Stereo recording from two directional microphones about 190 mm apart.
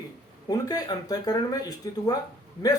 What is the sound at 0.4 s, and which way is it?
Speech, 20° left (ahead or behind).